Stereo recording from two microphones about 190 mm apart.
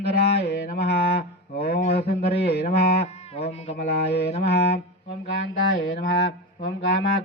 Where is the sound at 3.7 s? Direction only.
55° left (ahead or behind).